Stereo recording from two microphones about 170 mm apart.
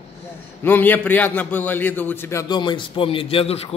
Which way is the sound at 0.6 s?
10° left (ahead or behind).